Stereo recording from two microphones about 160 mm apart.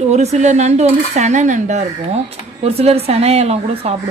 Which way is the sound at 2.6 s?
40° right (ahead or behind).